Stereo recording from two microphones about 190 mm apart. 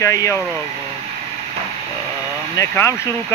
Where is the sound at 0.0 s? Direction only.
15° left (ahead or behind).